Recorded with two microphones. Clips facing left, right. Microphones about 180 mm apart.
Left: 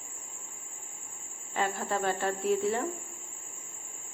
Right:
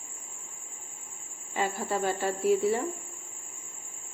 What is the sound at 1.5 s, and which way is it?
Speech, 10° right (ahead or behind).